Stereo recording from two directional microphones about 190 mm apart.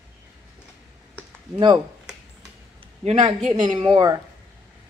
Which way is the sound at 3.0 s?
35° right (ahead or behind).